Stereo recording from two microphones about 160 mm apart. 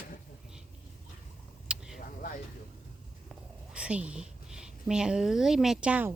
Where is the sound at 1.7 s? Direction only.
5° right (ahead or behind).